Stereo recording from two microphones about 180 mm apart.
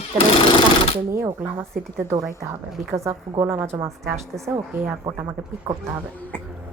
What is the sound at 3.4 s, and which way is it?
Speech, 15° right (ahead or behind).